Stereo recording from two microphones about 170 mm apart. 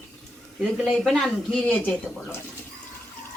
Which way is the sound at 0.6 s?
Centre (ahead or behind).